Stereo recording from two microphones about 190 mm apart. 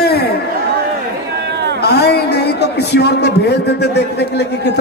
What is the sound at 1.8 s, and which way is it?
A man's voice, 60° left (ahead or behind).